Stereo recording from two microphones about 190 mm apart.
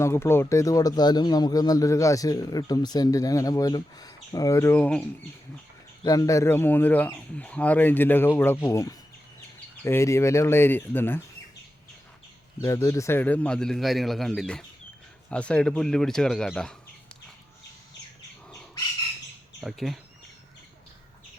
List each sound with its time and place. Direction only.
0.0 s speech: 15° left (ahead or behind)
6.0 s speech: 20° left (ahead or behind)
12.6 s a man's voice: 15° left (ahead or behind)
19.6 s a man's voice: centre (ahead or behind)